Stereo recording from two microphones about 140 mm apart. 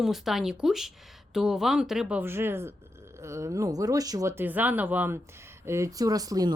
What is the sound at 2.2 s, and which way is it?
Speech, 15° right (ahead or behind).